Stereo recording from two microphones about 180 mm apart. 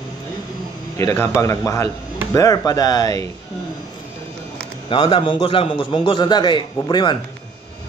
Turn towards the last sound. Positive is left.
turn(degrees=25)  # may be behind; listen again after turning